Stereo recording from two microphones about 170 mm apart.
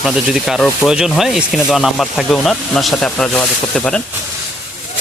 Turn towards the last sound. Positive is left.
turn(degrees=5)  # may be behind; listen again after turning